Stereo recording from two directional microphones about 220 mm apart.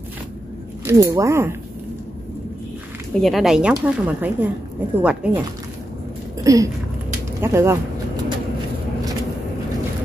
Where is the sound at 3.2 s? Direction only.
Centre (ahead or behind).